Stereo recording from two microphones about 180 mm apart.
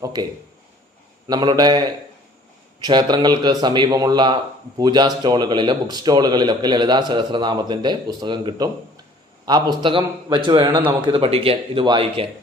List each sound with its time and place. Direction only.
0.0 s speech: 20° right (ahead or behind)
1.3 s speech: 20° right (ahead or behind)